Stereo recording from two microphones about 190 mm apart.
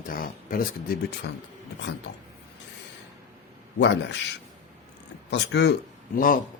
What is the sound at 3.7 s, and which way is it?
Speech, 65° left (ahead or behind).